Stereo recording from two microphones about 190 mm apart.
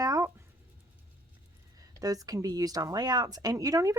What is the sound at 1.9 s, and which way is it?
Speech, 20° right (ahead or behind).